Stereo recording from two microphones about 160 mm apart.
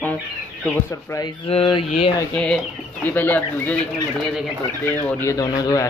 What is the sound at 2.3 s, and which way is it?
Speech, 5° left (ahead or behind).